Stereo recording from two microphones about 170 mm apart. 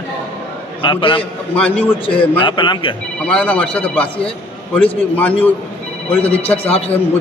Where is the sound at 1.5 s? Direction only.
10° left (ahead or behind).